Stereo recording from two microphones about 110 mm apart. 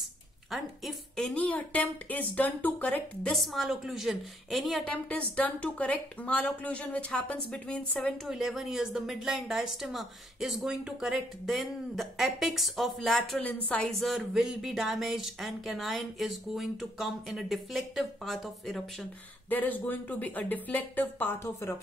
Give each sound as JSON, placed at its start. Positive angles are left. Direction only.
{"t": 0.5, "sound": "a woman's voice", "side_deg": 0}
{"t": 3.3, "sound": "speech", "side_deg": 0}
{"t": 4.9, "sound": "a woman's voice", "side_deg": 10}
{"t": 8.3, "sound": "speech", "side_deg": -5}
{"t": 13.3, "sound": "a woman's voice", "side_deg": 10}
{"t": 13.9, "sound": "speech", "side_deg": 0}
{"t": 19.5, "sound": "a woman's voice", "side_deg": 15}